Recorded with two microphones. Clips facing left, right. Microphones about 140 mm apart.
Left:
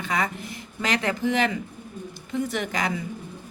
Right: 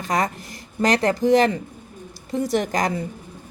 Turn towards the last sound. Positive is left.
turn(degrees=-40)  # may be behind; listen again after turning